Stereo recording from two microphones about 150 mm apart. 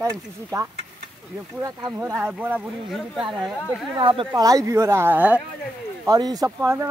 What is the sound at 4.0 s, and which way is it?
Speech, 35° right (ahead or behind).